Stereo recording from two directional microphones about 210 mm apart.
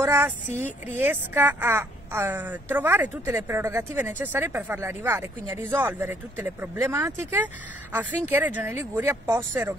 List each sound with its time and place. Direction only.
0.0 s a woman's voice: 10° right (ahead or behind)
0.6 s speech: 35° left (ahead or behind)
0.9 s a woman's voice: 10° right (ahead or behind)